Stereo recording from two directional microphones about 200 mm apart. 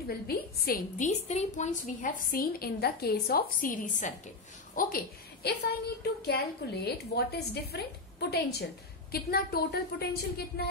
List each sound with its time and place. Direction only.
0.3 s a woman's voice: 45° left (ahead or behind)